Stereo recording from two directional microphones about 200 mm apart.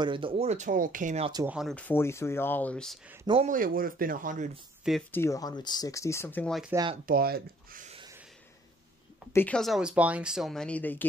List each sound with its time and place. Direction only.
0.0 s speech: 25° right (ahead or behind)
1.5 s speech: centre (ahead or behind)
3.4 s speech: 45° right (ahead or behind)
5.1 s speech: 15° left (ahead or behind)
6.7 s speech: 20° right (ahead or behind)
7.1 s speech: 50° right (ahead or behind)
9.3 s speech: 10° left (ahead or behind)